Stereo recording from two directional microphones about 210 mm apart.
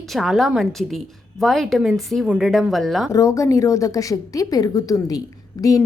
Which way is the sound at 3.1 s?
15° left (ahead or behind).